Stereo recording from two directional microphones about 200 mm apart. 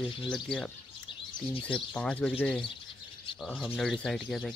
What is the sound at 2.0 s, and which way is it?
Speech, 5° left (ahead or behind).